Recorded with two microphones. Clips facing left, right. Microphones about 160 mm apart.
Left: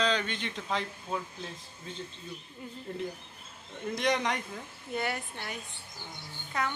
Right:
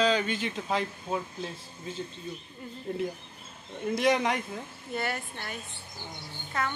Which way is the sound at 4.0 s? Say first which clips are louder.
Right 4 dB; 5° right (ahead or behind).